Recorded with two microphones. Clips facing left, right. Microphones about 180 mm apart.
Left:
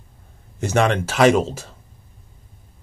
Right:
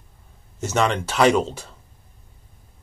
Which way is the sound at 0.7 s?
55° left (ahead or behind).